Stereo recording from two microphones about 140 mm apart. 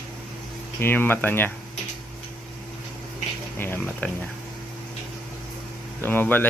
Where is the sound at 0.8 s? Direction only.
15° left (ahead or behind).